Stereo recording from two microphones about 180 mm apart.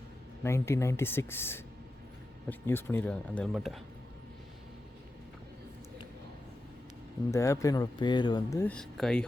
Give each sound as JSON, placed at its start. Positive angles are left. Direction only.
{"t": 0.4, "sound": "speech", "side_deg": 15}
{"t": 7.3, "sound": "speech", "side_deg": 15}